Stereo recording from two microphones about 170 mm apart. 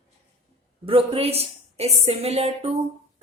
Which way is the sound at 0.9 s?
35° right (ahead or behind).